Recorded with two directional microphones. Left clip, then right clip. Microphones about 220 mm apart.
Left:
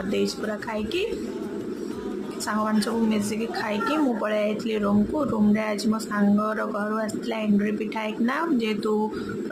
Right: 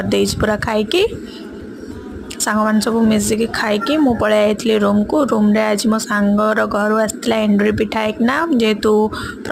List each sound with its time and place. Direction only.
0.1 s speech: 35° right (ahead or behind)
2.4 s a woman's voice: 25° right (ahead or behind)